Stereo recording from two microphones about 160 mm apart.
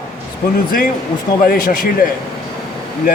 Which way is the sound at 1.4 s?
65° left (ahead or behind).